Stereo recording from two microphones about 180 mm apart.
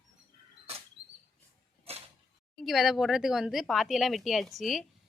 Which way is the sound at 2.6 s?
Centre (ahead or behind).